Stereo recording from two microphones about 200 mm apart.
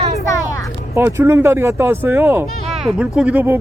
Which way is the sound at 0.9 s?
10° right (ahead or behind).